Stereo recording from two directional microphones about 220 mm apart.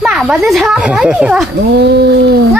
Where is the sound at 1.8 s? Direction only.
50° right (ahead or behind).